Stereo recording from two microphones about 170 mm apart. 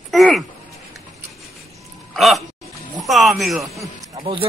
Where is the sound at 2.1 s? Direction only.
Centre (ahead or behind).